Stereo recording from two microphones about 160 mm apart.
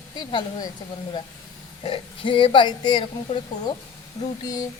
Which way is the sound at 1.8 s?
35° left (ahead or behind).